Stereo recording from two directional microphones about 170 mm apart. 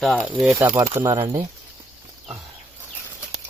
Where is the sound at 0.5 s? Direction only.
15° right (ahead or behind).